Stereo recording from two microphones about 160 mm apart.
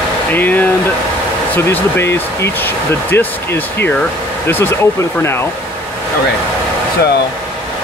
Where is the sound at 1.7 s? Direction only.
15° left (ahead or behind).